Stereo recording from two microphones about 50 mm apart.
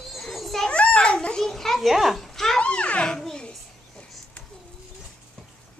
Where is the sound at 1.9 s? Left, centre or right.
Centre.